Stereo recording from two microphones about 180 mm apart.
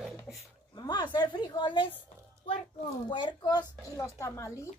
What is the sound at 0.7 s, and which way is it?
A woman's voice, 20° left (ahead or behind).